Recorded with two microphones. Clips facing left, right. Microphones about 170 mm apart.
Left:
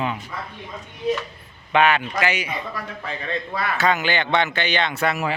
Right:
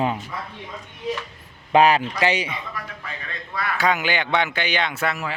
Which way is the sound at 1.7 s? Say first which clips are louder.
Right 2 dB; 35° right (ahead or behind).